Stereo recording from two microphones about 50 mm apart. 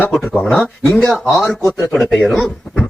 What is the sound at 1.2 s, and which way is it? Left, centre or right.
Speech, centre.